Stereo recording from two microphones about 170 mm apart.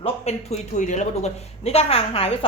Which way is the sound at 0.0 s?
40° left (ahead or behind).